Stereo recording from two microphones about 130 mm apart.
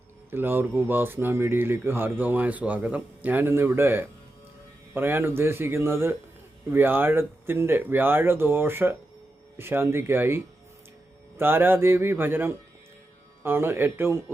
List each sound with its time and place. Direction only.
0.3 s speech: 15° right (ahead or behind)